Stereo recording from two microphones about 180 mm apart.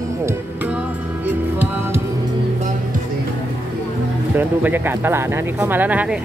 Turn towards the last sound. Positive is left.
turn(degrees=-10)  # may be behind; listen again after turning